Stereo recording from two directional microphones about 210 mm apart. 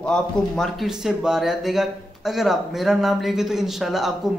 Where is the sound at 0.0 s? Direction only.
Centre (ahead or behind).